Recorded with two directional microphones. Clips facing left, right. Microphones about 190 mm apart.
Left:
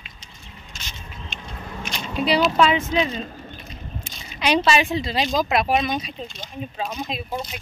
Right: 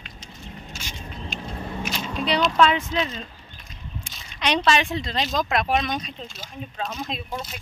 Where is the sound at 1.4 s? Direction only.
30° right (ahead or behind).